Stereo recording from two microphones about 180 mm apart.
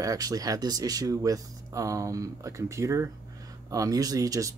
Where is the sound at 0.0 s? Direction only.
20° right (ahead or behind).